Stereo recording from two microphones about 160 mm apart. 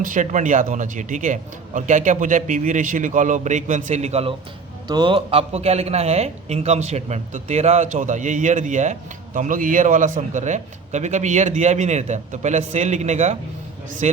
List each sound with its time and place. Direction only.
0.0 s speech: 55° right (ahead or behind)
4.9 s speech: 30° right (ahead or behind); by 14.2 s 45° right (ahead or behind)